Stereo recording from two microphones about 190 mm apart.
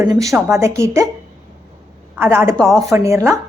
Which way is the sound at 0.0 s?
15° right (ahead or behind).